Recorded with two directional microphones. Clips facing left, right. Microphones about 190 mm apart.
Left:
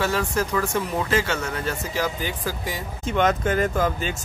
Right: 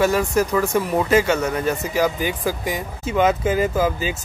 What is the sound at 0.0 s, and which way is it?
Speech, 10° right (ahead or behind).